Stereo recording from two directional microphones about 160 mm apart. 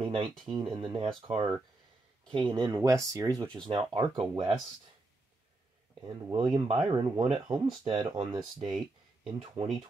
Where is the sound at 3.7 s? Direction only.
30° right (ahead or behind).